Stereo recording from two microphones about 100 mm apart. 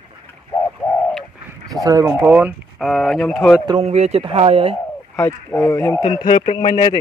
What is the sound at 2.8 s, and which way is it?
Speech, centre (ahead or behind).